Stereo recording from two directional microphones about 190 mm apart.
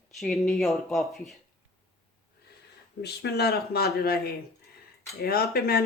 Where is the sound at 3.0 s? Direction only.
60° left (ahead or behind).